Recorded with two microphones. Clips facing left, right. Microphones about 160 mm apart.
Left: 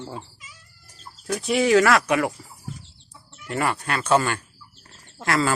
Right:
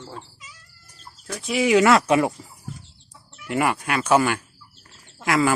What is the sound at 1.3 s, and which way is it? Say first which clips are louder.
Speech: left 3 dB; centre (ahead or behind).